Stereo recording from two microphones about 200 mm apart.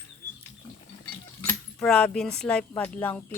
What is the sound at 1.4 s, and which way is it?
Keys jangling, 5° left (ahead or behind).